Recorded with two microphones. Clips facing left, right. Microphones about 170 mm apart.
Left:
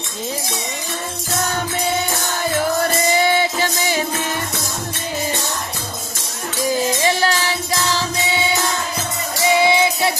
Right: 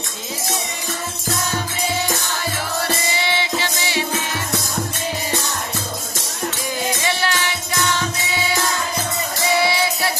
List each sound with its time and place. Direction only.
3.1 s music: 45° left (ahead or behind)
7.0 s music: 40° left (ahead or behind)
9.6 s music: 20° left (ahead or behind)